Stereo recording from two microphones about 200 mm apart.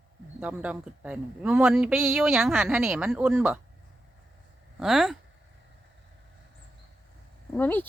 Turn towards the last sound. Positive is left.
turn(degrees=10)  # may be behind; listen again after turning